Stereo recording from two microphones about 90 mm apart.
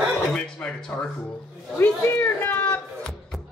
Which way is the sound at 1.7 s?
25° left (ahead or behind).